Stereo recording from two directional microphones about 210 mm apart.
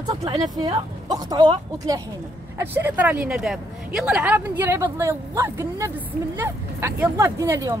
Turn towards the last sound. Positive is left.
turn(degrees=-15)  # may be behind; listen again after turning